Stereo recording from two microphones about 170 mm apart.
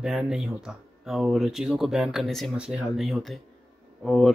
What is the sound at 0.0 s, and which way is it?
Speech, 5° right (ahead or behind).